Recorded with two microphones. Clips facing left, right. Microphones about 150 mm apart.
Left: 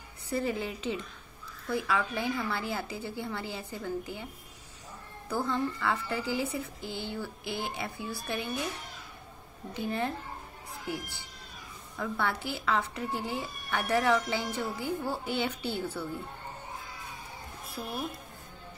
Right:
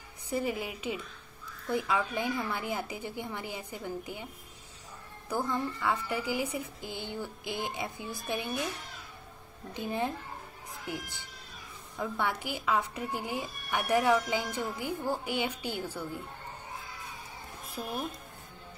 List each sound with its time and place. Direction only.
0.3 s speech: 10° right (ahead or behind)
5.3 s speech: 15° right (ahead or behind)
9.8 s speech: 15° right (ahead or behind)
12.0 s speech: 15° right (ahead or behind)
17.8 s a woman's voice: 20° right (ahead or behind)